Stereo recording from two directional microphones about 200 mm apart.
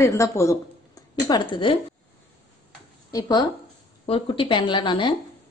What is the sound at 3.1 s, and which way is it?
A woman's voice, 20° left (ahead or behind).